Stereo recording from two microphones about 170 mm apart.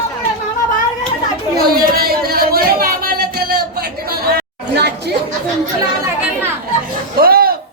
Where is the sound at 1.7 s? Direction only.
60° right (ahead or behind).